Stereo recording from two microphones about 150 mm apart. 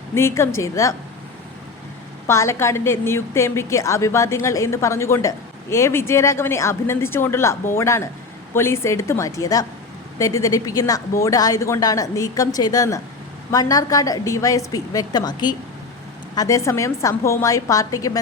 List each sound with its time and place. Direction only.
0.1 s a woman's voice: 15° left (ahead or behind)
2.2 s a woman's voice: 20° left (ahead or behind)